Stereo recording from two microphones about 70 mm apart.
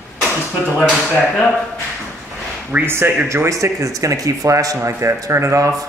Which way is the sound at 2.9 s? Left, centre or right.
Right.